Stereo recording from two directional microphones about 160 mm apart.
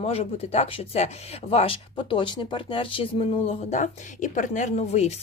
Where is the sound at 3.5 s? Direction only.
50° left (ahead or behind).